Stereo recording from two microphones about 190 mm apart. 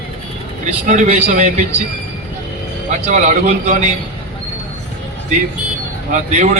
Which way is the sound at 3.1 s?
40° right (ahead or behind).